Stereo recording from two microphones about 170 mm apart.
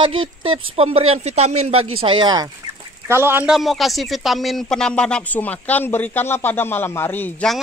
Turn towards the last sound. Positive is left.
turn(degrees=10)  # may be behind; listen again after turning